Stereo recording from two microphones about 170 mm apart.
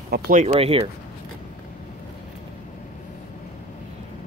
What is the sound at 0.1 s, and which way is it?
Speech, 50° right (ahead or behind).